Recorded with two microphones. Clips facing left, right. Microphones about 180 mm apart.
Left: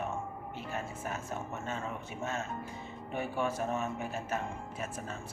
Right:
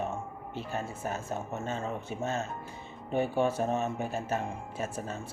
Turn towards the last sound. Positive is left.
turn(degrees=-35)  # may be behind; listen again after turning